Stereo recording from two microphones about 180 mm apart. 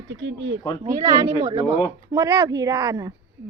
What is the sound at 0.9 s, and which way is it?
Speech, 15° right (ahead or behind).